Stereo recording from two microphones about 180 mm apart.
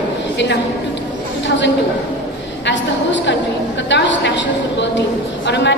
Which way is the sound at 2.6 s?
85° left.